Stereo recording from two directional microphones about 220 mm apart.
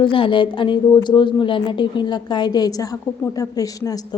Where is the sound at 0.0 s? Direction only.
20° left (ahead or behind).